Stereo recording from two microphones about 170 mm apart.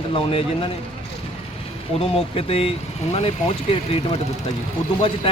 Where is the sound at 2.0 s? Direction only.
35° left (ahead or behind).